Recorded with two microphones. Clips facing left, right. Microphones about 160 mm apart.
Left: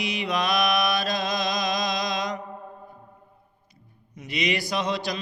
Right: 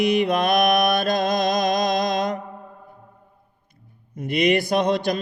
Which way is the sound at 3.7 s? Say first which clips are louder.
Right 7 dB; 55° right (ahead or behind).